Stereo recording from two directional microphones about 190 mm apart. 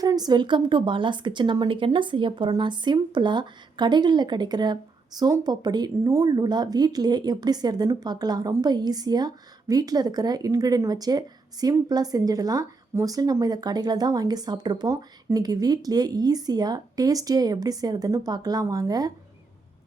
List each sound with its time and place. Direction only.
0.0 s a woman's voice: 20° right (ahead or behind)